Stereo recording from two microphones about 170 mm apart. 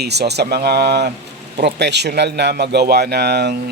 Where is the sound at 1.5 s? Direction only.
85° right.